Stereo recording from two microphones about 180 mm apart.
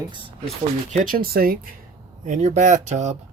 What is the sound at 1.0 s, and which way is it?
Speech, 55° right (ahead or behind).